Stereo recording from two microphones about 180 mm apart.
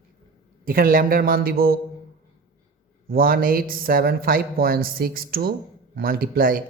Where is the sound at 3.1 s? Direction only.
55° right (ahead or behind).